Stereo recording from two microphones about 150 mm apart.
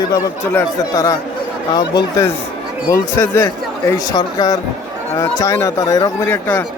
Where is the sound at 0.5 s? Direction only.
25° left (ahead or behind).